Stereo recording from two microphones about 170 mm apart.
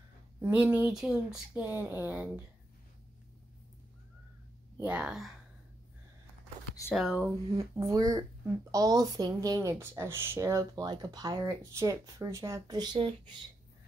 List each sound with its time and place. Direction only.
0.4 s speech: 10° right (ahead or behind)
4.7 s speech: 5° right (ahead or behind)
6.9 s speech: 5° right (ahead or behind)
7.5 s a woman's voice: 20° right (ahead or behind)